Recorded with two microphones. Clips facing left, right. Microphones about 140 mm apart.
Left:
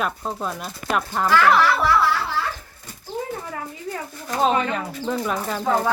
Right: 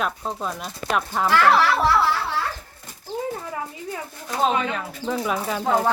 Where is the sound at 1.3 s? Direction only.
30° right (ahead or behind).